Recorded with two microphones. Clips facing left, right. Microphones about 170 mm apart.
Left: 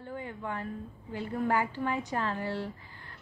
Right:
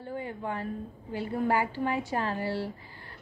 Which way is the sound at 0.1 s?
30° right (ahead or behind).